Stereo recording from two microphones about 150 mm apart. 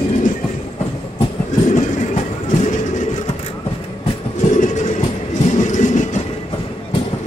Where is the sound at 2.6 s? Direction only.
55° left (ahead or behind).